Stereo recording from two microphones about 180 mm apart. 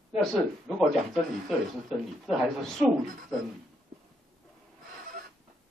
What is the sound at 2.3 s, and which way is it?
Speech, centre (ahead or behind).